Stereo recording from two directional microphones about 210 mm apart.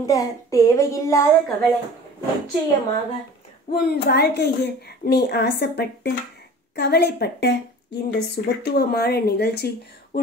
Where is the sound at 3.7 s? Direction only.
50° left (ahead or behind).